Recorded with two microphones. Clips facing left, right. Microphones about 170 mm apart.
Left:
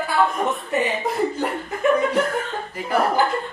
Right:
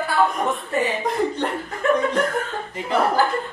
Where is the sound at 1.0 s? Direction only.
5° left (ahead or behind).